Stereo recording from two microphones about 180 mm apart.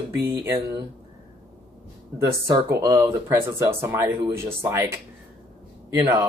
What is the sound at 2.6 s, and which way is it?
Speech, 15° right (ahead or behind).